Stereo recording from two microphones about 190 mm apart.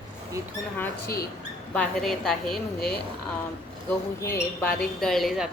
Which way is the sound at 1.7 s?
5° left (ahead or behind).